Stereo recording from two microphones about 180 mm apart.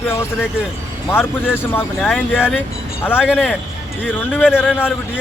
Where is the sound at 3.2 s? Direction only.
5° right (ahead or behind).